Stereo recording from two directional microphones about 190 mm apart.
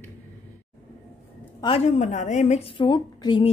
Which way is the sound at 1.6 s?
30° left (ahead or behind).